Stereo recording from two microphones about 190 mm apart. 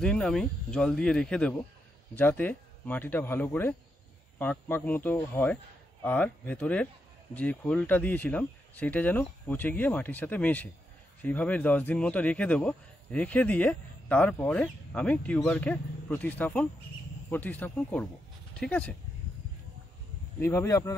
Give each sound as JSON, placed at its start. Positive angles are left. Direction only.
{"t": 0.0, "sound": "speech", "side_deg": 5}
{"t": 20.3, "sound": "speech", "side_deg": 15}